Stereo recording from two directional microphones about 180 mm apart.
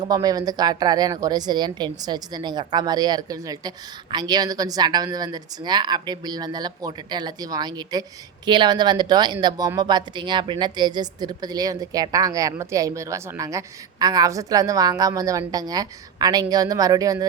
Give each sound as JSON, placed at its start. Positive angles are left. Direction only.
{"t": 0.0, "sound": "speech", "side_deg": -20}